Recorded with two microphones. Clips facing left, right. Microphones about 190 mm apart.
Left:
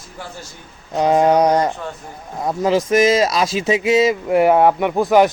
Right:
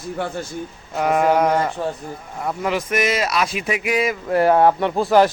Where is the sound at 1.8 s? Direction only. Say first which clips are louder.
Right 5 dB; 35° right (ahead or behind).